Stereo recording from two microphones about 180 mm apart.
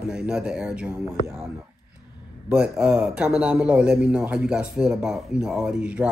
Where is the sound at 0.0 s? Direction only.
5° right (ahead or behind).